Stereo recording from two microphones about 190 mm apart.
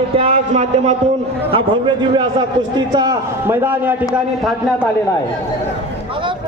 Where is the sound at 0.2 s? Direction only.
35° right (ahead or behind); by 3.9 s 10° right (ahead or behind).